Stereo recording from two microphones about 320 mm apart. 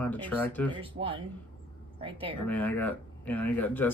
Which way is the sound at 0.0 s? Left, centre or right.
Centre.